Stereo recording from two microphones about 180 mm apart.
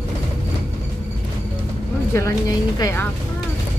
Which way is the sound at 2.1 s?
15° left (ahead or behind).